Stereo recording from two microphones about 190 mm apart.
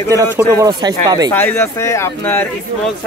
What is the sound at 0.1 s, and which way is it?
Speech, 20° right (ahead or behind).